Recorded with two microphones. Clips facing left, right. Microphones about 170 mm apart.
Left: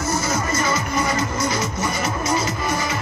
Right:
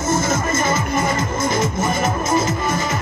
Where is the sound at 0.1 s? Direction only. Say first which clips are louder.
Right 5 dB; 50° right (ahead or behind).